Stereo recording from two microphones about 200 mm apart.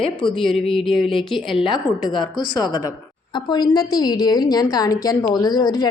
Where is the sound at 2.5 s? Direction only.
20° left (ahead or behind).